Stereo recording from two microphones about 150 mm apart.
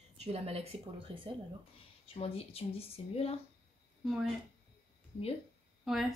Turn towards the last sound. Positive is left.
turn(degrees=0)  # may be behind; listen again after turning